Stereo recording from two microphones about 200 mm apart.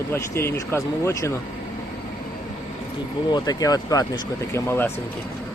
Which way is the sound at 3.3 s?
20° left (ahead or behind).